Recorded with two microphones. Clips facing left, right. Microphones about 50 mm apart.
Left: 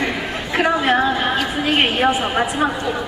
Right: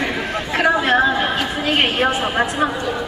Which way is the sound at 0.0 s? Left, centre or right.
Centre.